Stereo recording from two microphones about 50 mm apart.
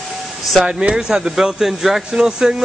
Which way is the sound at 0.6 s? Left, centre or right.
Centre.